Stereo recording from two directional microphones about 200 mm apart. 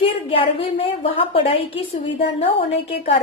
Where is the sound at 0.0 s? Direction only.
30° left (ahead or behind).